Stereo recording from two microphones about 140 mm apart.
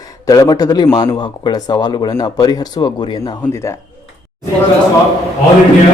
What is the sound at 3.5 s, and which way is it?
Speech, 20° left (ahead or behind).